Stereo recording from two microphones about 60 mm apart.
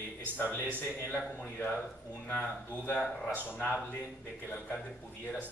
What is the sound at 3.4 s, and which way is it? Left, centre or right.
Speech, left.